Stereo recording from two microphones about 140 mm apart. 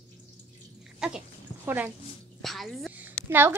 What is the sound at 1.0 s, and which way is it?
Speech, 5° right (ahead or behind).